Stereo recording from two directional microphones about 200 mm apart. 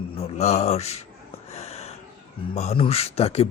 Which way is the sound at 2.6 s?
30° left (ahead or behind).